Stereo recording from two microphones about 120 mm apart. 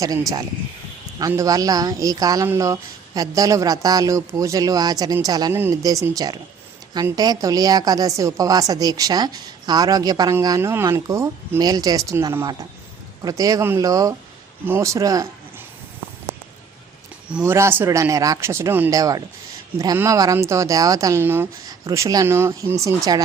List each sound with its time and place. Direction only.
0.0 s a woman's voice: 30° right (ahead or behind)
10.6 s speech: 20° right (ahead or behind)
17.4 s speech: 20° right (ahead or behind)
21.8 s speech: 30° right (ahead or behind)
23.1 s a woman's voice: 35° right (ahead or behind)